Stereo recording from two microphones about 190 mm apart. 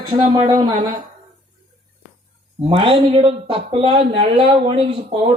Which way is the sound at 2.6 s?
30° right (ahead or behind).